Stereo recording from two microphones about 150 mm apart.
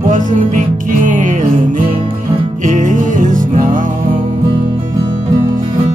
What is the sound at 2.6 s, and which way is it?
Music, 60° right (ahead or behind).